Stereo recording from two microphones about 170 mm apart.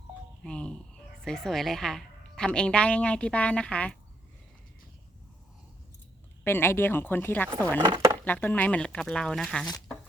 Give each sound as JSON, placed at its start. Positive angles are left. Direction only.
{"t": 0.4, "sound": "a woman's voice", "side_deg": 5}
{"t": 6.4, "sound": "speech", "side_deg": 15}
{"t": 7.8, "sound": "speech", "side_deg": -25}
{"t": 8.2, "sound": "a woman's voice", "side_deg": 10}